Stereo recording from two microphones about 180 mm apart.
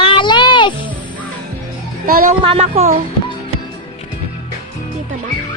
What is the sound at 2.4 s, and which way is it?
Speech, 35° right (ahead or behind).